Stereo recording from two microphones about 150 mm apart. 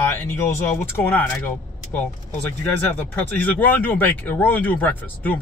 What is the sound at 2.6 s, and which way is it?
Speech, 10° left (ahead or behind).